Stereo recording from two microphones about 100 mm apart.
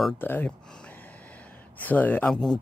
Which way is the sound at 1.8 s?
15° left (ahead or behind).